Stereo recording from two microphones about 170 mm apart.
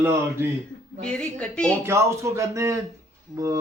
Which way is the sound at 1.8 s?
15° right (ahead or behind).